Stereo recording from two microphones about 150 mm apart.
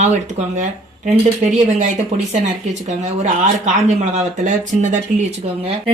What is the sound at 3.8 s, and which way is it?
Speech, 55° right (ahead or behind).